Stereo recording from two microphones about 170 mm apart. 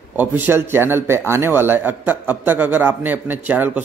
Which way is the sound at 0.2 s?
10° right (ahead or behind).